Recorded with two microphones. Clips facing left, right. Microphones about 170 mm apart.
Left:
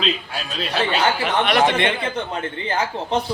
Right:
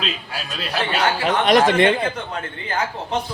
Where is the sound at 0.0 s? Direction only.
5° right (ahead or behind).